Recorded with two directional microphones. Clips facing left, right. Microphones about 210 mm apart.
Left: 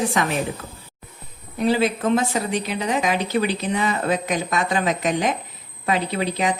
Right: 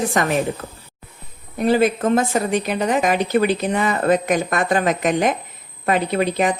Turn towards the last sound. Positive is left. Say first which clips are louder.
# right 4 dB
turn(degrees=-50)  # may be behind; listen again after turning